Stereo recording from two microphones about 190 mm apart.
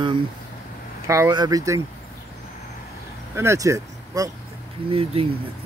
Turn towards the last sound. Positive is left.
turn(degrees=-30)  # may be behind; listen again after turning